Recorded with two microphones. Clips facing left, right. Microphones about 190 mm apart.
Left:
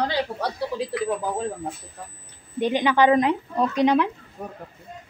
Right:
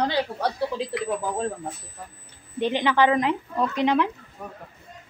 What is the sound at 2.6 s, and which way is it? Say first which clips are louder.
Speech: left 2 dB; 15° left (ahead or behind).